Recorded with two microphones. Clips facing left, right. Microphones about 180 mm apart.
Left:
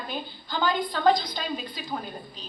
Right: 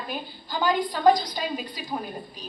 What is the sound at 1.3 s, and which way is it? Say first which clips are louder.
Speech: right 2 dB; 10° right (ahead or behind).